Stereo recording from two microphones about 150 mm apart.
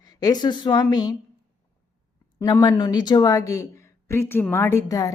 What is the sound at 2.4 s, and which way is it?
Speech, 25° left (ahead or behind).